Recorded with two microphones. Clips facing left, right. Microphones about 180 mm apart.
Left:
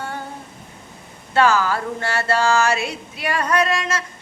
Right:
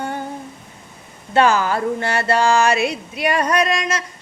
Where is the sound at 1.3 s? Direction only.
20° right (ahead or behind).